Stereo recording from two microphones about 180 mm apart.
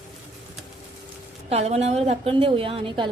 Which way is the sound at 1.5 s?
35° right (ahead or behind).